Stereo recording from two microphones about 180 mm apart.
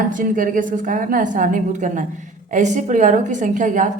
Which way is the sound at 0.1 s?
50° right (ahead or behind).